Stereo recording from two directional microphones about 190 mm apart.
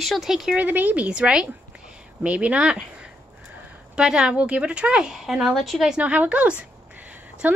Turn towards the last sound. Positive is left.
turn(degrees=-10)  # may be behind; listen again after turning